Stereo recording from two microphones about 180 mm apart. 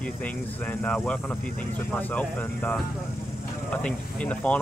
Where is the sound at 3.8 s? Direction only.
5° left (ahead or behind).